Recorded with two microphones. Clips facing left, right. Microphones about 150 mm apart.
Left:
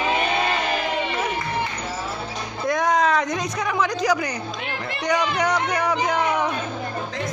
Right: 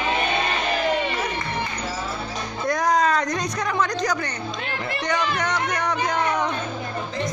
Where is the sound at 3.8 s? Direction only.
10° left (ahead or behind).